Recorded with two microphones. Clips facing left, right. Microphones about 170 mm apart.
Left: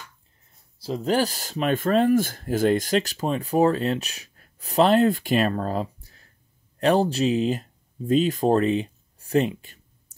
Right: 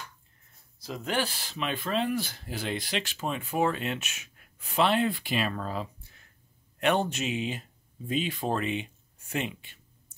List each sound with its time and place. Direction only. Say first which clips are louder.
0.7 s speech: left 8 dB; 30° left (ahead or behind)